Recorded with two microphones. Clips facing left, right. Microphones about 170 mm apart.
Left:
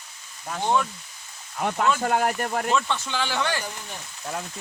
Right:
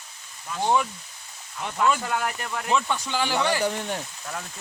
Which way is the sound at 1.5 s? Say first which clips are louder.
Left 1 dB; 55° left (ahead or behind).